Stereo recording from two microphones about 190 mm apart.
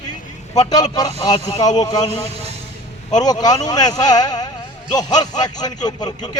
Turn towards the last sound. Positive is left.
turn(degrees=20)  # may be behind; listen again after turning